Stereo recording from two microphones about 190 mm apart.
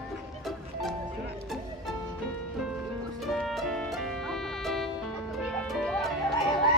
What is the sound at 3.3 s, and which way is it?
Music, centre (ahead or behind).